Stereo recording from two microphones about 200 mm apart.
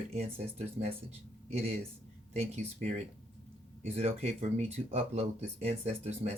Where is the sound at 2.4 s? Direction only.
35° right (ahead or behind).